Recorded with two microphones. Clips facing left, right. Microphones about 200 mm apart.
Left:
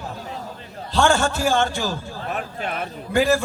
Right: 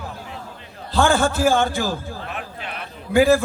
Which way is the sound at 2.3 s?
45° left (ahead or behind).